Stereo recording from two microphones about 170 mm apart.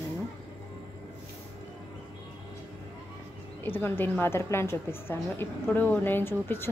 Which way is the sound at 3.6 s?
10° left (ahead or behind).